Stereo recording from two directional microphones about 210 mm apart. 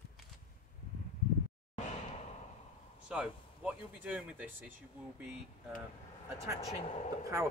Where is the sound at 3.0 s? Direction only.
5° right (ahead or behind).